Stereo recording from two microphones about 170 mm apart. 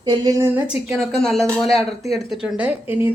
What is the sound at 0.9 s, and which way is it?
A woman's voice, centre (ahead or behind).